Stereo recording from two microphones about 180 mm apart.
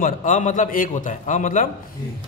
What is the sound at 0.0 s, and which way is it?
A man's voice, 45° left (ahead or behind).